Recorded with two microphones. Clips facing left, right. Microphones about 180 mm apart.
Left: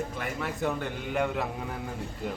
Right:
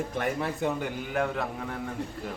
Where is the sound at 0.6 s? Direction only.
20° right (ahead or behind).